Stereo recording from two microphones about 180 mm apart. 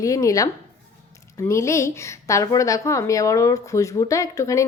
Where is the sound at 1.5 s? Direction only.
15° left (ahead or behind).